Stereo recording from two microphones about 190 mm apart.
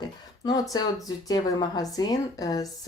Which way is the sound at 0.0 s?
20° left (ahead or behind).